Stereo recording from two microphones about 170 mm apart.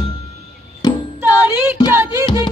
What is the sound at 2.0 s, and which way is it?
Music, 15° right (ahead or behind).